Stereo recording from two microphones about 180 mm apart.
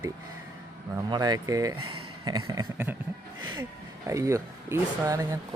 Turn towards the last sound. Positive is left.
turn(degrees=-15)  # may be behind; listen again after turning